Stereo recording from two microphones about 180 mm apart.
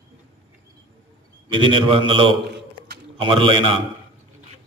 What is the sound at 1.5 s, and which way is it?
A man's voice, 30° right (ahead or behind).